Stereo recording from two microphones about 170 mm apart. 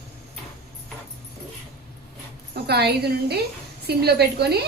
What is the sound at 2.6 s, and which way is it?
A woman's voice, 70° right (ahead or behind).